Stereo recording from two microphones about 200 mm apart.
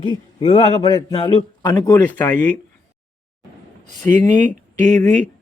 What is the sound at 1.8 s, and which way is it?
Speech, 10° left (ahead or behind).